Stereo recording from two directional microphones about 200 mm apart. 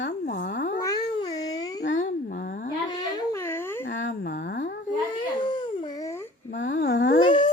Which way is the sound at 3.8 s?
65° left (ahead or behind).